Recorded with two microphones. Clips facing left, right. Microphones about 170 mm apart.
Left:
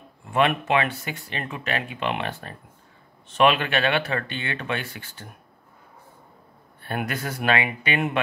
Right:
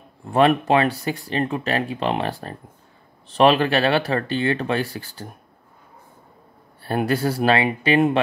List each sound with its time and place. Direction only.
0.3 s speech: 35° right (ahead or behind)
6.8 s speech: 35° right (ahead or behind)